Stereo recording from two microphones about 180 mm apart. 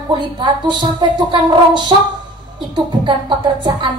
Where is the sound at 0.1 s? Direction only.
25° right (ahead or behind).